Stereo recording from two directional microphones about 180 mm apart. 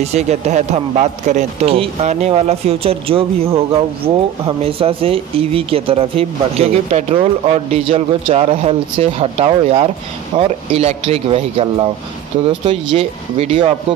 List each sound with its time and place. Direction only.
0.0 s speech: 40° right (ahead or behind)
12.9 s speech: 30° right (ahead or behind)